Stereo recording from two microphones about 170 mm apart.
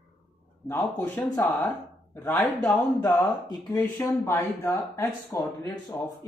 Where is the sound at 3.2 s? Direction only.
25° left (ahead or behind).